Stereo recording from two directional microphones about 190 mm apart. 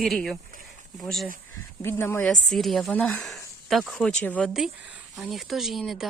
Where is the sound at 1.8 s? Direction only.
10° left (ahead or behind).